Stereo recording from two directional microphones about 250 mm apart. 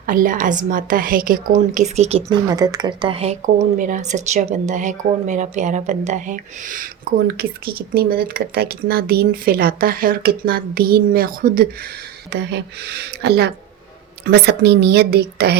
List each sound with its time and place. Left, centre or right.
0.0 s speech: right
2.5 s speech: centre; by 15.5 s right